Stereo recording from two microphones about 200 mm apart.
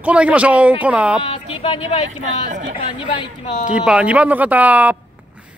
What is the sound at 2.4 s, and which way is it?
Speech, 40° right (ahead or behind).